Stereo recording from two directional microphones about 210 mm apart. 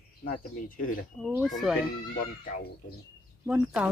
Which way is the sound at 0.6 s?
40° left (ahead or behind).